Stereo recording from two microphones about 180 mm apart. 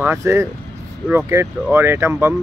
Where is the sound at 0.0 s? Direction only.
15° right (ahead or behind).